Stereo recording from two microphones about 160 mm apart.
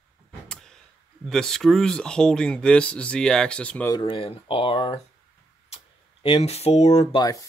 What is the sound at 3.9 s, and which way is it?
Speech, 30° left (ahead or behind).